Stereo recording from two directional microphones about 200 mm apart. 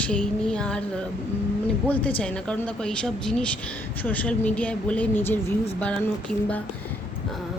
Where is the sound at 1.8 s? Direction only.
5° left (ahead or behind).